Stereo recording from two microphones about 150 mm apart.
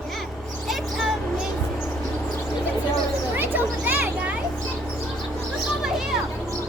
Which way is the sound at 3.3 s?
10° right (ahead or behind).